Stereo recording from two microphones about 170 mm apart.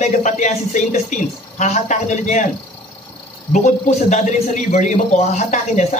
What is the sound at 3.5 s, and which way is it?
A man's voice, 45° left (ahead or behind).